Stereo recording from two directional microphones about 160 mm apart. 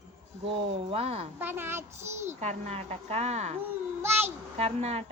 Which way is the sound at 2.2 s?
45° right (ahead or behind).